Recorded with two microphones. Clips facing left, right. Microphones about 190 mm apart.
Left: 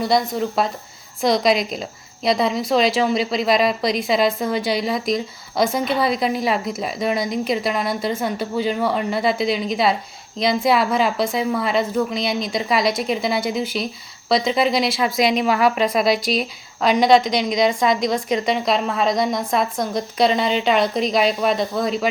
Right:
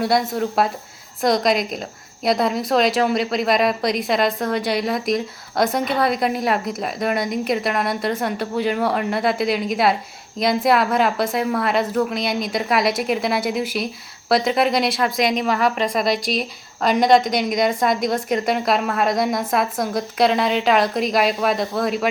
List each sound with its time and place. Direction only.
0.0 s speech: centre (ahead or behind)